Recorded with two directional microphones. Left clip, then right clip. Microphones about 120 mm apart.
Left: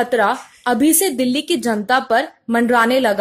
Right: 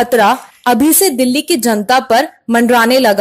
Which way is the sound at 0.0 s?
30° right (ahead or behind).